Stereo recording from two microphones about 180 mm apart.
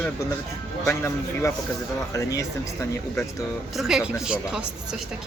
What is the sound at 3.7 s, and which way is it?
Speech, centre (ahead or behind).